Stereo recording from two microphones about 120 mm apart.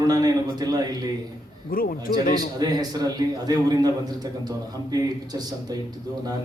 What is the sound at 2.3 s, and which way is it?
A man's voice, 35° right (ahead or behind).